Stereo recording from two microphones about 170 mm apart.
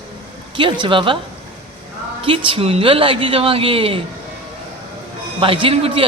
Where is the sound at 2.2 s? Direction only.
30° right (ahead or behind).